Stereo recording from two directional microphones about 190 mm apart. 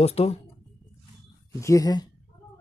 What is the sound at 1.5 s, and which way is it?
Speech, 15° left (ahead or behind).